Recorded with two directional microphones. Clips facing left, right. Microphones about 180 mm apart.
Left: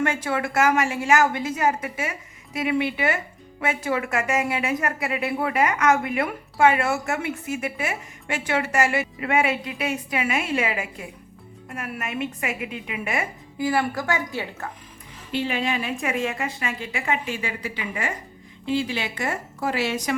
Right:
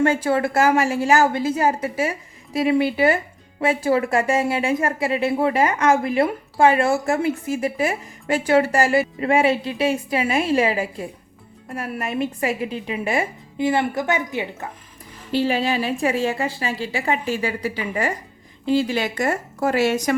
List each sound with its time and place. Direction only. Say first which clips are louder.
0.0 s a woman's voice: right 6 dB; 30° right (ahead or behind)
15.3 s a woman's voice: right 5 dB; 35° right (ahead or behind)